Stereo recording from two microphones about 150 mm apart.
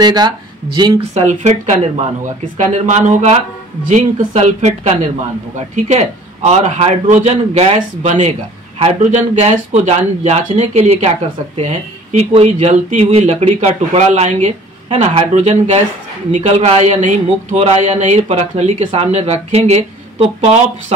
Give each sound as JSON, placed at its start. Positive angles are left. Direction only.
{"t": 0.0, "sound": "speech", "side_deg": -30}
{"t": 1.1, "sound": "speech", "side_deg": -55}